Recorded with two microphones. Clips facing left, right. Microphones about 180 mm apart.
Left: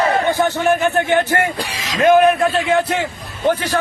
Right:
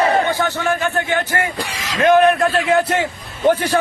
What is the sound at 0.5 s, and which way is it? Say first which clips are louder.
A man's voice: left 4 dB; 15° left (ahead or behind).